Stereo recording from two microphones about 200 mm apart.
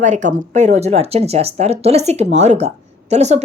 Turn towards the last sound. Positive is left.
turn(degrees=-35)  # may be behind; listen again after turning